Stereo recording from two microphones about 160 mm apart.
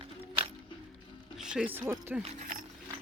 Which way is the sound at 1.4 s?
5° right (ahead or behind).